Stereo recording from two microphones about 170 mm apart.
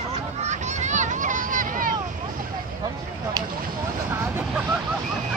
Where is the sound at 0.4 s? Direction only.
45° right (ahead or behind).